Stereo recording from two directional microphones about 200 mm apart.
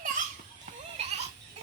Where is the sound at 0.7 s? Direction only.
35° right (ahead or behind).